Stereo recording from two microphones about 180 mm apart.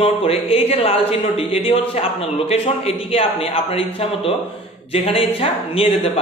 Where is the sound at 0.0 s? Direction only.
30° left (ahead or behind).